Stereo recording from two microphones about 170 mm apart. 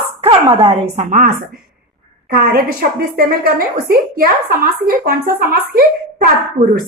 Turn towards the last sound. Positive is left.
turn(degrees=-60)  # may be behind; listen again after turning